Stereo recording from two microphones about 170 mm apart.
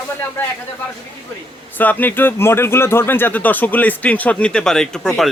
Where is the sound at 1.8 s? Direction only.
10° left (ahead or behind).